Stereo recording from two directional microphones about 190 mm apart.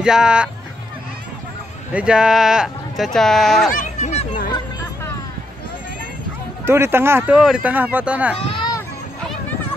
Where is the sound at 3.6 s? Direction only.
40° left (ahead or behind).